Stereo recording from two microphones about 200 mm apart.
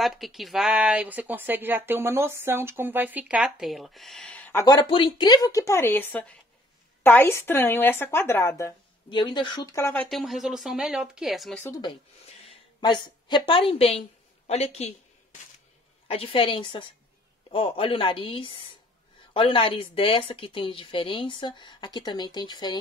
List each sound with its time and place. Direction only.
0.0 s speech: centre (ahead or behind)
9.1 s speech: 25° left (ahead or behind)
10.0 s speech: centre (ahead or behind)
11.6 s a woman's voice: 20° left (ahead or behind)
16.1 s speech: 25° left (ahead or behind)